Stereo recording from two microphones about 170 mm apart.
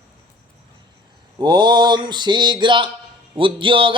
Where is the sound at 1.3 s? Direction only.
25° right (ahead or behind).